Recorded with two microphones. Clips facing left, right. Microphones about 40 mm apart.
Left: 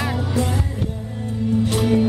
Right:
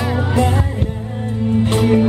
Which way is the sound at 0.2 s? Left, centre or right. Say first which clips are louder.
Right 5 dB; right.